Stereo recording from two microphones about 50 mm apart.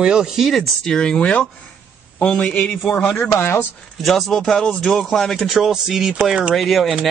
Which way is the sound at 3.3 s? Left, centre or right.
Left.